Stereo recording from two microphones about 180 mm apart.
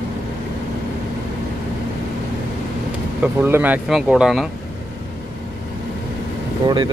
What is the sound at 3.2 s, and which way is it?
Speech, 10° right (ahead or behind).